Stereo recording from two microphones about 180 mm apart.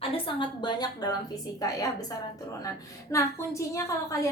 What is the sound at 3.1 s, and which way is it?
A woman's voice, 15° left (ahead or behind).